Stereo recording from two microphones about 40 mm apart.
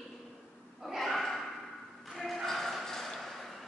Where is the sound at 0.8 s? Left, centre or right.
Centre.